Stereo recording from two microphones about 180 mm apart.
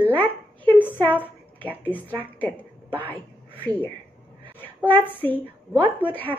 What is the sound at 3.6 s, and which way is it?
A woman's voice, 10° left (ahead or behind).